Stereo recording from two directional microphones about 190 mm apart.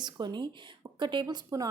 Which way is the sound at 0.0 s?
25° right (ahead or behind).